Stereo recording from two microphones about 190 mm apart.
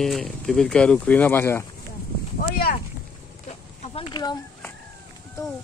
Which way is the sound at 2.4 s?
50° left (ahead or behind).